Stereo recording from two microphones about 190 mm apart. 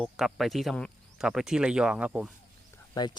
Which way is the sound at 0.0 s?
Centre (ahead or behind).